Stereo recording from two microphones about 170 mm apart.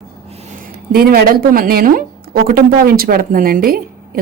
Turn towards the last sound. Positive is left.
turn(degrees=-60)  # may be behind; listen again after turning